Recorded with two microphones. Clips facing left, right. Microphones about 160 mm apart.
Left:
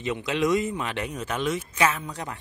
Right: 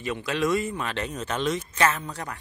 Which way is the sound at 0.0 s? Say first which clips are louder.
Left 1 dB; 20° left (ahead or behind).